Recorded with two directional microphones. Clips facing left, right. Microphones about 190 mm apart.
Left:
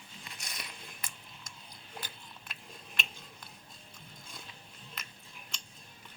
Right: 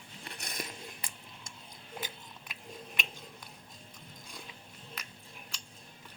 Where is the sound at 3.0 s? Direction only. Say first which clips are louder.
Left 1 dB; 15° right (ahead or behind).